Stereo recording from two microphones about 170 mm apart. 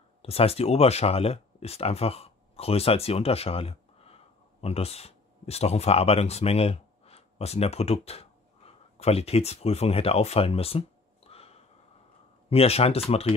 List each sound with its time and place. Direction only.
0.2 s speech: 35° left (ahead or behind)